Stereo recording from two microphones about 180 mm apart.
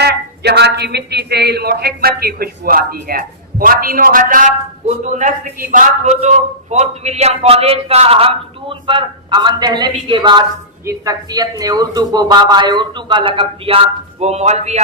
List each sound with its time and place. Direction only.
0.0 s a man's voice: 65° right (ahead or behind); by 14.8 s 40° right (ahead or behind)